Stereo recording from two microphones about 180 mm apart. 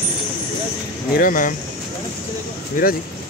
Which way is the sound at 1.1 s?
50° left (ahead or behind).